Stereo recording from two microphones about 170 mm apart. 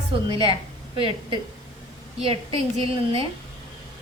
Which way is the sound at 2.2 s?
35° right (ahead or behind).